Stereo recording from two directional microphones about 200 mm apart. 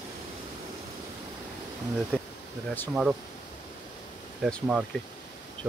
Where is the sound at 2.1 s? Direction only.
10° left (ahead or behind).